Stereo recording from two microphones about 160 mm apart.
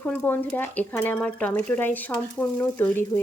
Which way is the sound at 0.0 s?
10° left (ahead or behind).